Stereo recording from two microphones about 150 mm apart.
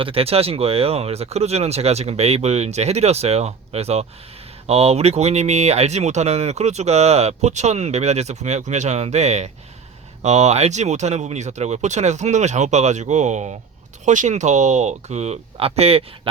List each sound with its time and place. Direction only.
0.0 s speech: 40° right (ahead or behind)